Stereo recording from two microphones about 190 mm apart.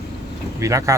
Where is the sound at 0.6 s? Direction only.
15° right (ahead or behind).